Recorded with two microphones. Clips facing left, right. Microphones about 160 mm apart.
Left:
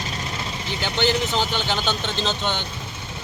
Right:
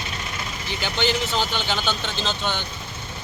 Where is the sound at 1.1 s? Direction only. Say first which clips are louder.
Left 2 dB; 15° left (ahead or behind).